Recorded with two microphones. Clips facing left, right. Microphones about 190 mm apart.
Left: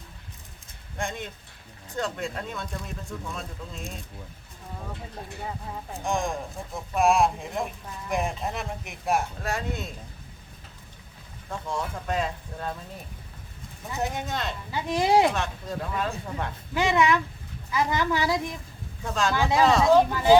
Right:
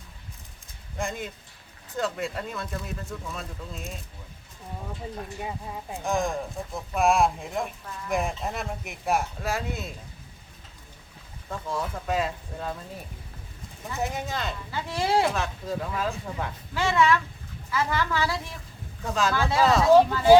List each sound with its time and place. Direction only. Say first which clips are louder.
0.9 s speech: right 1 dB; centre (ahead or behind)
6.1 s speech: right 1 dB; centre (ahead or behind)
11.7 s speech: right 1 dB; centre (ahead or behind)
14.0 s speech: even; centre (ahead or behind)
14.7 s a woman's voice: left 4 dB; 15° left (ahead or behind)
15.3 s speech: right 1 dB; centre (ahead or behind)
16.7 s a woman's voice: even; 20° left (ahead or behind)
19.0 s speech: right 1 dB; centre (ahead or behind)
19.3 s a woman's voice: left 2 dB; 15° left (ahead or behind)